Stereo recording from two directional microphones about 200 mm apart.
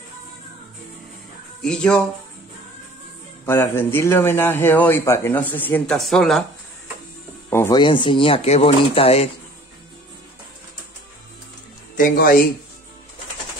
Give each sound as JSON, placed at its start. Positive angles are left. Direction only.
{"t": 1.6, "sound": "speech", "side_deg": 5}
{"t": 3.4, "sound": "speech", "side_deg": 10}
{"t": 7.4, "sound": "speech", "side_deg": 15}
{"t": 12.0, "sound": "speech", "side_deg": 45}